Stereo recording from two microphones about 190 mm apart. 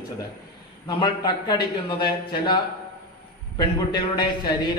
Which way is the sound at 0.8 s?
25° left (ahead or behind).